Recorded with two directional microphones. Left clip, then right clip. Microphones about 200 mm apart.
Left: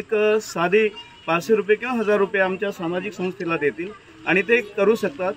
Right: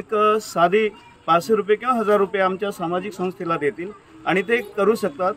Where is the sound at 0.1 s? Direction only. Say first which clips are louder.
Right 1 dB; 35° right (ahead or behind).